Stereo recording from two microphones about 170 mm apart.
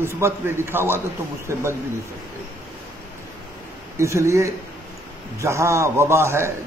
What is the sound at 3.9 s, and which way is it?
A man's voice, 15° right (ahead or behind).